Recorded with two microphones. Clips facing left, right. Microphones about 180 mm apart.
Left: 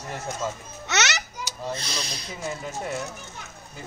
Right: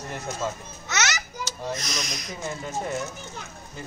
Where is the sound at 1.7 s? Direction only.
30° left (ahead or behind).